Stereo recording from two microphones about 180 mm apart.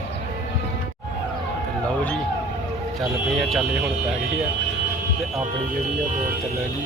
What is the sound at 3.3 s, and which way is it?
Speech, centre (ahead or behind).